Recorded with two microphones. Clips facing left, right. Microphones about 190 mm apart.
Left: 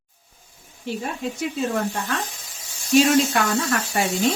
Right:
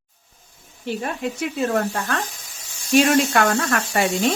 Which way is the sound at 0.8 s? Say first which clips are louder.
Right 2 dB; 60° right (ahead or behind).